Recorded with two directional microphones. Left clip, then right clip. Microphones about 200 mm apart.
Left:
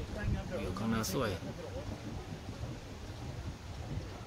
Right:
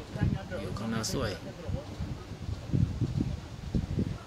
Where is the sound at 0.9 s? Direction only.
Centre (ahead or behind).